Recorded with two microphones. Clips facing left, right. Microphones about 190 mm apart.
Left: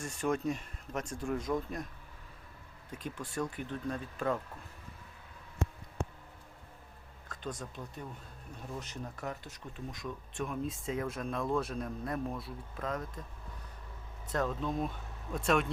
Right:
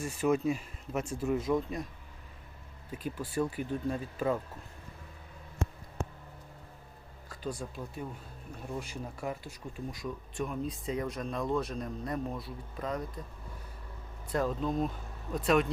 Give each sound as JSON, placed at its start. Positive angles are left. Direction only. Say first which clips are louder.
{"t": 0.0, "sound": "speech", "louder": "right 4 dB", "side_deg": -5}
{"t": 2.9, "sound": "speech", "louder": "right 4 dB", "side_deg": -5}
{"t": 7.6, "sound": "speech", "louder": "right 4 dB", "side_deg": -5}
{"t": 14.3, "sound": "speech", "louder": "right 3 dB", "side_deg": 0}